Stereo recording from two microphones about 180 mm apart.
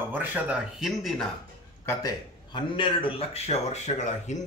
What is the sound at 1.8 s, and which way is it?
A man's voice, 20° left (ahead or behind).